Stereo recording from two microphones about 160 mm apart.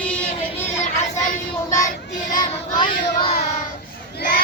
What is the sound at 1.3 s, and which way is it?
Child singing, 50° left (ahead or behind).